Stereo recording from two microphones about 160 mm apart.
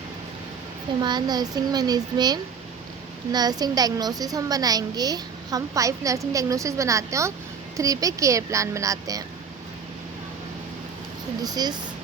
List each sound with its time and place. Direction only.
1.0 s a woman's voice: 25° right (ahead or behind)
11.4 s a woman's voice: 25° right (ahead or behind)